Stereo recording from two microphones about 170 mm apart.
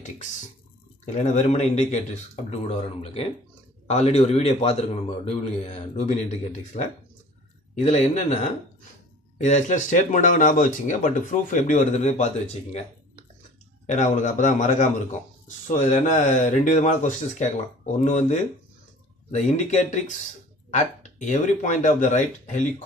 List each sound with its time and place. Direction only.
1.0 s a man's voice: 45° left (ahead or behind)
13.8 s a man's voice: 45° left (ahead or behind)